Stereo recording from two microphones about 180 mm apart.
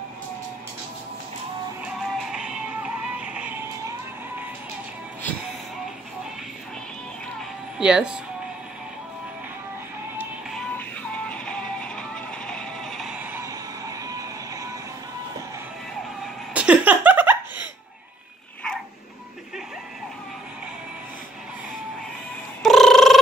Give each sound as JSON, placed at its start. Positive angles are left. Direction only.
{"t": 2.0, "sound": "music", "side_deg": 0}
{"t": 7.8, "sound": "speech", "side_deg": -5}
{"t": 10.5, "sound": "music", "side_deg": 5}
{"t": 13.2, "sound": "music", "side_deg": -15}
{"t": 16.5, "sound": "laughter", "side_deg": -5}
{"t": 22.6, "sound": "a sound", "side_deg": 0}